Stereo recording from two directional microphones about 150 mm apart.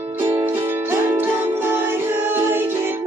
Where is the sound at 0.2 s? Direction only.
20° right (ahead or behind).